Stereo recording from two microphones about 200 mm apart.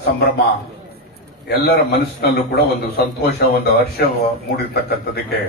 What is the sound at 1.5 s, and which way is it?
A man's voice, 55° left (ahead or behind).